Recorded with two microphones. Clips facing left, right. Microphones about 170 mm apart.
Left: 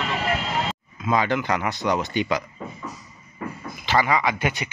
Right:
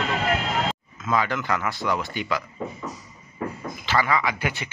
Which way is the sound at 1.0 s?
20° left (ahead or behind).